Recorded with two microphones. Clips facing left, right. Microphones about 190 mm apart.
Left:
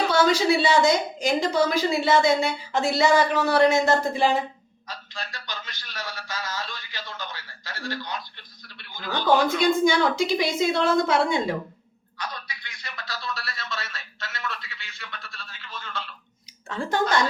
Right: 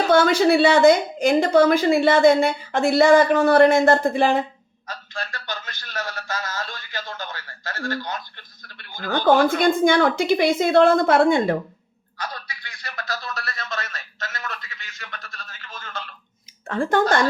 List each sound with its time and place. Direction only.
0.1 s a man's voice: 55° right (ahead or behind)